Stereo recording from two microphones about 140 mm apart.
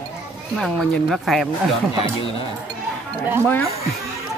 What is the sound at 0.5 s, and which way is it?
Speech, 5° left (ahead or behind).